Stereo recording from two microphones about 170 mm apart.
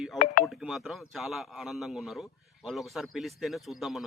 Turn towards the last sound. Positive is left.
turn(degrees=0)  # may be behind; listen again after turning